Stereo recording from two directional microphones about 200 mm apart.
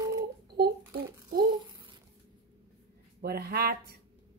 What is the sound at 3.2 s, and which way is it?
Speech, 50° right (ahead or behind).